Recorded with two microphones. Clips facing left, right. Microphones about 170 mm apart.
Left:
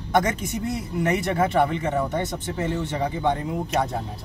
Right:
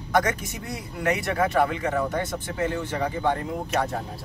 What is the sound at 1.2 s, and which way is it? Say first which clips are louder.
Speech: even; 20° left (ahead or behind).